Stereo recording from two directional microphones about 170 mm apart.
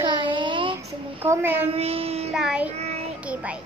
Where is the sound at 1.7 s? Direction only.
35° right (ahead or behind).